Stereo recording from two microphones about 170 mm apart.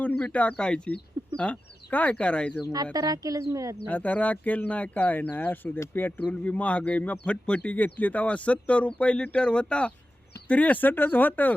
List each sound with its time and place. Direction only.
0.0 s speech: 10° left (ahead or behind)
2.7 s speech: 25° right (ahead or behind)
3.8 s speech: 10° left (ahead or behind)